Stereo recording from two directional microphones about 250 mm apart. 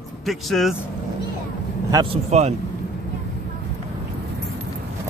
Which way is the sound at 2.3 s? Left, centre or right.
Right.